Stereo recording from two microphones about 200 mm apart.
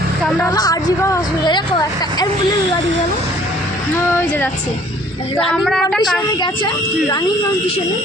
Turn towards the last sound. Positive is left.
turn(degrees=20)  # may be behind; listen again after turning